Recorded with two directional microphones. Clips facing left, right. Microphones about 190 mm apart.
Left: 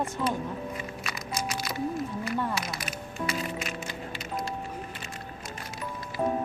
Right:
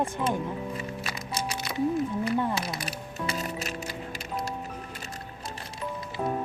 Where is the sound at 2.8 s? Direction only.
35° right (ahead or behind).